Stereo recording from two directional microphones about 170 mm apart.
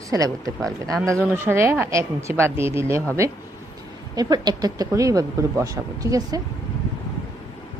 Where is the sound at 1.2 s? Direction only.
10° right (ahead or behind).